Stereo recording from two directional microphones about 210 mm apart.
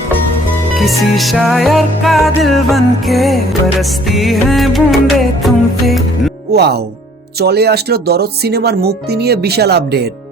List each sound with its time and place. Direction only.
1.0 s music: centre (ahead or behind)
6.5 s speech: 50° right (ahead or behind)